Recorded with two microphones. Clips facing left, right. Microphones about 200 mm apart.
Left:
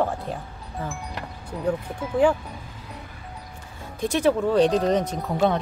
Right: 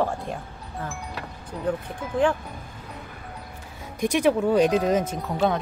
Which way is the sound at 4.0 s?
10° right (ahead or behind).